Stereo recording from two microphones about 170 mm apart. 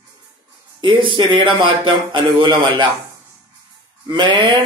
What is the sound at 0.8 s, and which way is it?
Speech, 30° right (ahead or behind).